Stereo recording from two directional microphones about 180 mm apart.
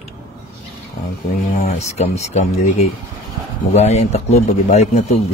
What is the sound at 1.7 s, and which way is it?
Speech, 40° left (ahead or behind).